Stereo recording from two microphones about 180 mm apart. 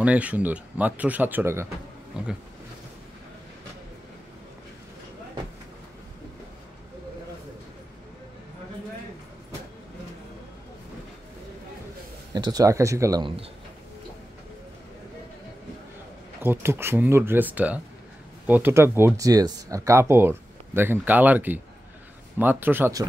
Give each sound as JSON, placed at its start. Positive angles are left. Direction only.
{"t": 0.0, "sound": "speech", "side_deg": -5}
{"t": 12.4, "sound": "speech", "side_deg": -20}
{"t": 16.3, "sound": "speech", "side_deg": -10}